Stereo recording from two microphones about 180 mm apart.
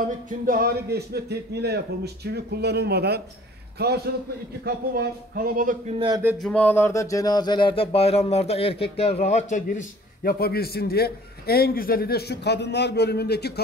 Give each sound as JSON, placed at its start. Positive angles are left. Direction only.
{"t": 0.5, "sound": "a man's voice", "side_deg": -60}
{"t": 5.9, "sound": "speech", "side_deg": -25}
{"t": 6.3, "sound": "speech", "side_deg": 5}